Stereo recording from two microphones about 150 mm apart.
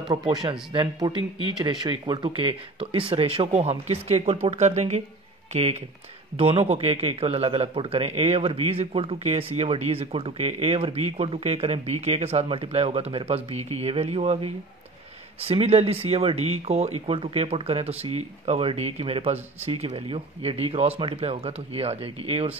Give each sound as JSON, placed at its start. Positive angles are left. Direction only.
{"t": 0.1, "sound": "speech", "side_deg": -30}